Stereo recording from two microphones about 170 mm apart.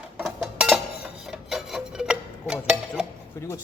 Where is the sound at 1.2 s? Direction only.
Centre (ahead or behind).